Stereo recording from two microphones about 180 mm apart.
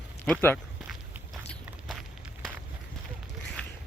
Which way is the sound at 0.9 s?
Centre (ahead or behind).